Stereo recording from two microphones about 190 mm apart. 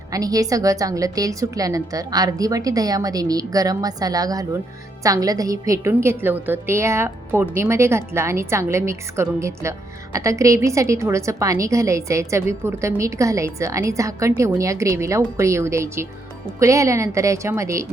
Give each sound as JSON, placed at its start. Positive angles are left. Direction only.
{"t": 0.1, "sound": "a woman's voice", "side_deg": -20}